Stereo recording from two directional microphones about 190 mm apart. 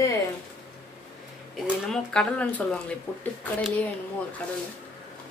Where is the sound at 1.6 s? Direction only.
Centre (ahead or behind).